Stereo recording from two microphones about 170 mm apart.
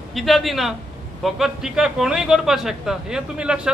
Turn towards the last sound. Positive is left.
turn(degrees=-5)  # may be behind; listen again after turning